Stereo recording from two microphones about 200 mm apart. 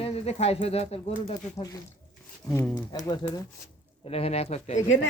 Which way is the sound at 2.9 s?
20° left (ahead or behind).